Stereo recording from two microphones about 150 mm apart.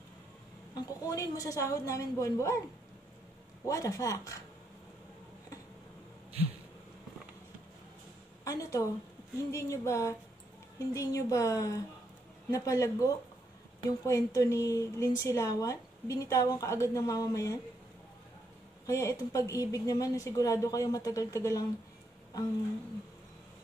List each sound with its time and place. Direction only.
0.7 s a woman's voice: 25° left (ahead or behind)
3.6 s a woman's voice: 20° left (ahead or behind)
8.5 s a woman's voice: 20° left (ahead or behind)
18.9 s a woman's voice: 20° left (ahead or behind)